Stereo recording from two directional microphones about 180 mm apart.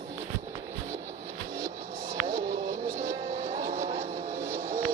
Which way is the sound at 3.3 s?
35° right (ahead or behind).